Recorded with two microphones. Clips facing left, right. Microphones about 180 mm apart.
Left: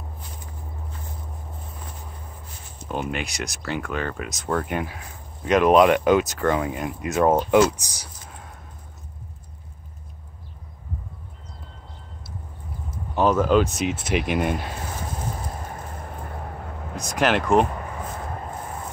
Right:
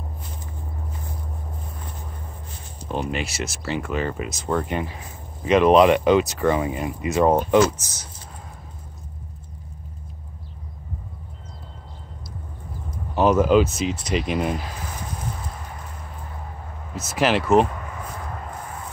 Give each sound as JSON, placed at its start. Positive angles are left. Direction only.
{"t": 2.9, "sound": "speech", "side_deg": 0}
{"t": 7.5, "sound": "speech", "side_deg": 15}
{"t": 13.1, "sound": "speech", "side_deg": -10}
{"t": 15.6, "sound": "a sound", "side_deg": 50}
{"t": 16.9, "sound": "speech", "side_deg": -5}